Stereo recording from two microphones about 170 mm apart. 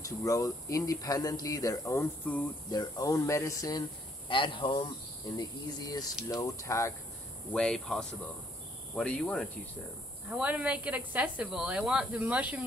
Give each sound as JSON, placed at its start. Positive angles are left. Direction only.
{"t": 0.0, "sound": "speech", "side_deg": 20}
{"t": 4.3, "sound": "speech", "side_deg": 30}
{"t": 7.5, "sound": "speech", "side_deg": 5}
{"t": 10.3, "sound": "a woman's voice", "side_deg": -10}